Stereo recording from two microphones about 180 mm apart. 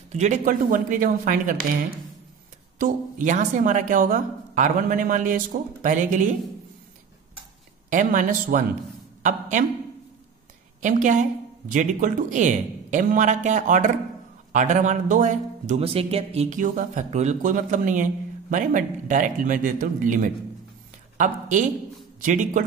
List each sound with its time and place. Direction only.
0.1 s speech: 40° right (ahead or behind)
7.9 s speech: 45° right (ahead or behind)
10.8 s speech: 45° right (ahead or behind)